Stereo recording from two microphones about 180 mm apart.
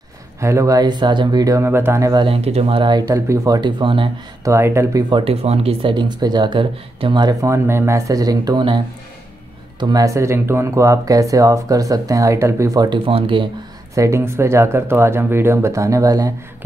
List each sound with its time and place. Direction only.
0.4 s speech: 15° right (ahead or behind)
2.2 s speech: 35° right (ahead or behind)
4.5 s speech: 15° right (ahead or behind)
5.1 s speech: 30° right (ahead or behind)
13.9 s speech: 15° right (ahead or behind)